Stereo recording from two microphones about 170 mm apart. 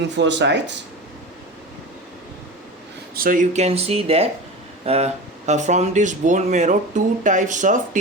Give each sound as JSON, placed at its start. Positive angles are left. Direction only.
{"t": 0.2, "sound": "speech", "side_deg": -90}
{"t": 3.2, "sound": "speech", "side_deg": -50}